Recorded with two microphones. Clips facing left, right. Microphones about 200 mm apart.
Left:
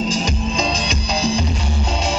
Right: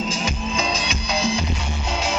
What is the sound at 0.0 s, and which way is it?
Music, 35° left (ahead or behind).